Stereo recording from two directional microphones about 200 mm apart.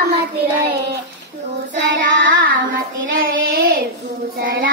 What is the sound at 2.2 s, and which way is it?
Child singing, 45° right (ahead or behind).